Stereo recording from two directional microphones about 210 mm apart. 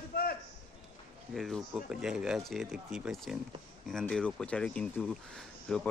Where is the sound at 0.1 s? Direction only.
45° left (ahead or behind).